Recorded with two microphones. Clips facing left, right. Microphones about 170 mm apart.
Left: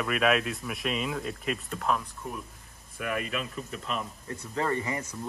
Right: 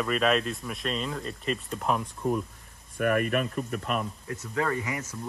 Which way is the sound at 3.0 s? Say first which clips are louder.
Right 7 dB; 55° right (ahead or behind).